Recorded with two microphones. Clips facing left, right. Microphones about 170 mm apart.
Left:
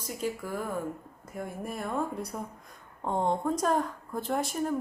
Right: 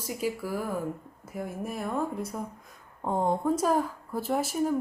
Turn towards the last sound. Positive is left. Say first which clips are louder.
# right 3 dB
turn(degrees=-5)  # may be behind; listen again after turning